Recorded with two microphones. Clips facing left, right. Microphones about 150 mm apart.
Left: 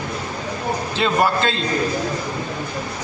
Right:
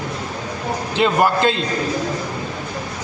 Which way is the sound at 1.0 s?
15° right (ahead or behind).